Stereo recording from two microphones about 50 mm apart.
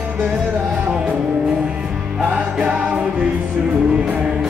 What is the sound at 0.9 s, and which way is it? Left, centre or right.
Music, centre.